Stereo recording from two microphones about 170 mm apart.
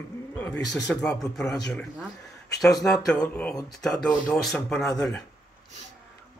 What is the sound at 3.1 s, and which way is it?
Speech, 5° left (ahead or behind).